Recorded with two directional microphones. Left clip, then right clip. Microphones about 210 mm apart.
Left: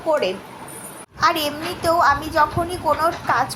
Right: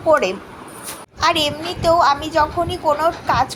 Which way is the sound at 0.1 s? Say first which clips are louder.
Right 4 dB; 20° right (ahead or behind).